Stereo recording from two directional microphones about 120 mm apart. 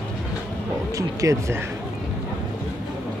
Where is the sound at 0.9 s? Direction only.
25° right (ahead or behind).